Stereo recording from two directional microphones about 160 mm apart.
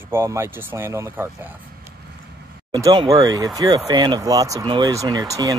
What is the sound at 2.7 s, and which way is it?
Speech, 25° right (ahead or behind).